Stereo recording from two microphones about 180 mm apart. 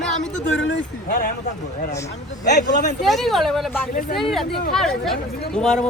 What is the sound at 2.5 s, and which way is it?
Speech, 70° left (ahead or behind).